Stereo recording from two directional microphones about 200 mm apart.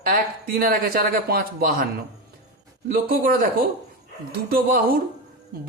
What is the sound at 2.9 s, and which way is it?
Speech, 45° right (ahead or behind).